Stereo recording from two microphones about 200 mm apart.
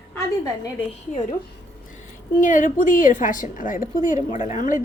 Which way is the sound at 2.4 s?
40° left (ahead or behind).